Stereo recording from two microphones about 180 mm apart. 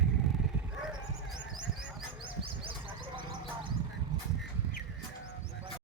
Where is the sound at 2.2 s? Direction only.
30° right (ahead or behind).